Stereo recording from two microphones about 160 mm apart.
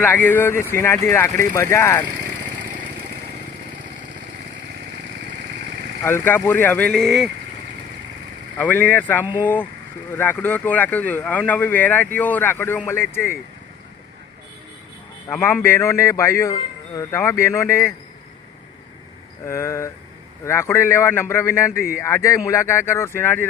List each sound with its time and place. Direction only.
0.0 s speech: 15° left (ahead or behind)
6.1 s speech: 15° left (ahead or behind)
8.5 s speech: 10° left (ahead or behind)
9.2 s speech: 10° right (ahead or behind)
10.2 s speech: 10° left (ahead or behind)
15.3 s speech: 15° left (ahead or behind)
19.5 s speech: 15° left (ahead or behind)